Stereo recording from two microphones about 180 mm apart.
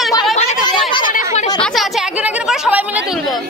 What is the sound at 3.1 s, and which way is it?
Speech, centre (ahead or behind).